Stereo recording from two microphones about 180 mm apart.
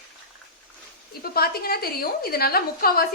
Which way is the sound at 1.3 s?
60° left (ahead or behind).